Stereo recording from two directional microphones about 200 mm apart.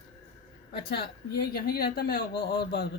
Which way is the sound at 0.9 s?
50° left (ahead or behind).